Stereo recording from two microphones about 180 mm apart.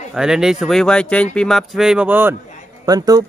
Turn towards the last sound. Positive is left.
turn(degrees=-20)  # may be behind; listen again after turning